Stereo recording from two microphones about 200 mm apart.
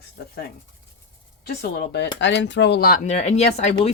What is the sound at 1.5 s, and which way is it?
Speech, 55° left (ahead or behind).